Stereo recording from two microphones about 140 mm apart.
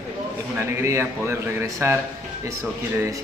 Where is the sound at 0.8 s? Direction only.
20° right (ahead or behind).